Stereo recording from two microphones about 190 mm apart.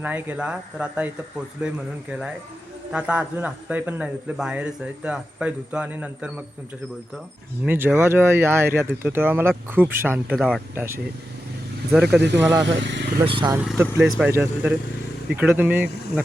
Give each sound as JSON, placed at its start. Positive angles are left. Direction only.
{"t": 0.0, "sound": "a man's voice", "side_deg": -10}
{"t": 2.9, "sound": "a man's voice", "side_deg": -5}
{"t": 7.6, "sound": "a man's voice", "side_deg": -10}
{"t": 10.8, "sound": "a man's voice", "side_deg": -15}
{"t": 12.4, "sound": "a man's voice", "side_deg": -15}
{"t": 12.6, "sound": "speech", "side_deg": -70}
{"t": 13.2, "sound": "speech", "side_deg": -25}
{"t": 13.6, "sound": "a man's voice", "side_deg": -10}